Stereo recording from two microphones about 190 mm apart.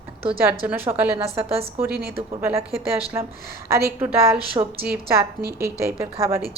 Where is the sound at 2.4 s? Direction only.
10° right (ahead or behind).